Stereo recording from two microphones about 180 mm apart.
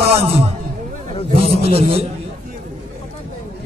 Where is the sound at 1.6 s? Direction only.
35° right (ahead or behind).